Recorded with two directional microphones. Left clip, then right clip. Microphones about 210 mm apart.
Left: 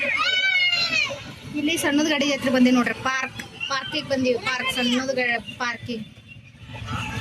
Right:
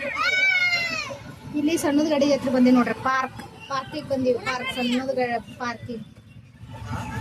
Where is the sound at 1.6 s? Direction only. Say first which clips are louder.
Even; 20° right (ahead or behind).